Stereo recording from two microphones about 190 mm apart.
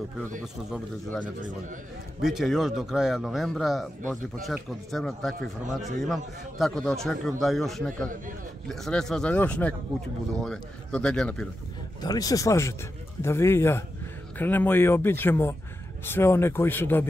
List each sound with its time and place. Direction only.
2.2 s a man's voice: centre (ahead or behind)
12.0 s speech: 20° left (ahead or behind)